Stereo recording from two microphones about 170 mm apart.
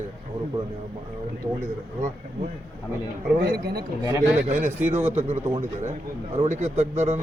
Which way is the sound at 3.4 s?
70° right (ahead or behind).